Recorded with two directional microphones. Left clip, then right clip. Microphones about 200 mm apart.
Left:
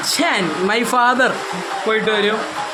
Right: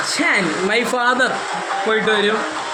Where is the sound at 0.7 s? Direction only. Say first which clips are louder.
Left 4 dB; 35° left (ahead or behind).